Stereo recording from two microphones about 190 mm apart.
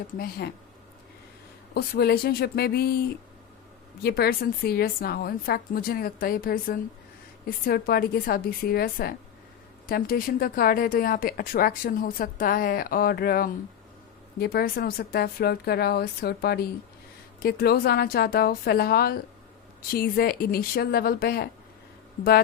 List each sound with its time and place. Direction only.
0.2 s speech: 55° left (ahead or behind)
1.7 s speech: 55° left (ahead or behind)
4.0 s a woman's voice: 55° left (ahead or behind)